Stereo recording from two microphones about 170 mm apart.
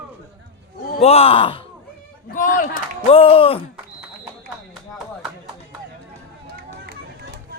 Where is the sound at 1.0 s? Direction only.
35° left (ahead or behind).